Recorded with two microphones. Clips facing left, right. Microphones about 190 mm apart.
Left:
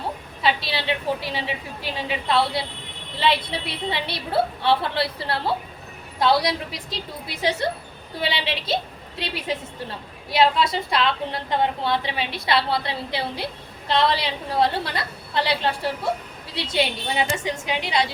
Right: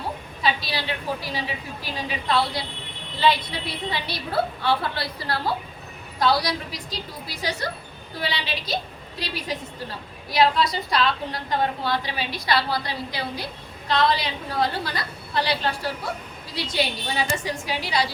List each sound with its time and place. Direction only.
0.4 s a woman's voice: 25° left (ahead or behind)